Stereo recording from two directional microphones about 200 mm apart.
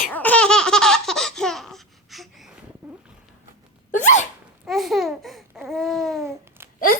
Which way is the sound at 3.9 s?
40° left (ahead or behind).